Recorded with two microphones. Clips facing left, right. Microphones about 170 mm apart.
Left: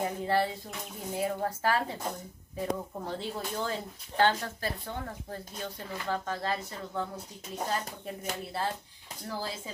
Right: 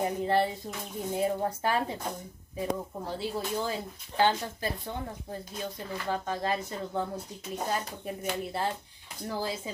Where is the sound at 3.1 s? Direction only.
5° right (ahead or behind).